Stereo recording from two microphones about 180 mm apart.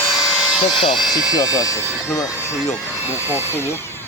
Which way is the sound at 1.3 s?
20° left (ahead or behind).